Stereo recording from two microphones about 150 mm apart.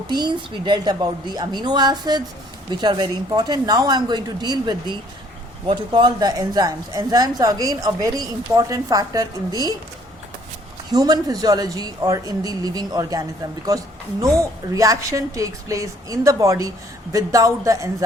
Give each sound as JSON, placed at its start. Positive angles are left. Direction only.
{"t": 0.1, "sound": "speech", "side_deg": -30}
{"t": 10.9, "sound": "speech", "side_deg": -25}